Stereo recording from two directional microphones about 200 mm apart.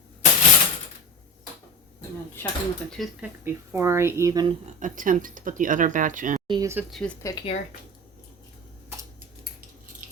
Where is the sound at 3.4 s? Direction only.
15° right (ahead or behind).